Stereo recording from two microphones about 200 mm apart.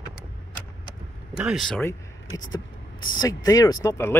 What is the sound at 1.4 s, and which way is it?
Speech, 5° right (ahead or behind).